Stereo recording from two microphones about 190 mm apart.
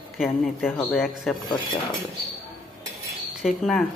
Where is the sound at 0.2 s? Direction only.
Centre (ahead or behind).